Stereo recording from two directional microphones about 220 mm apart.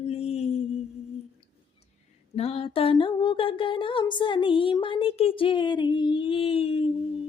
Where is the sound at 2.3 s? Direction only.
25° left (ahead or behind).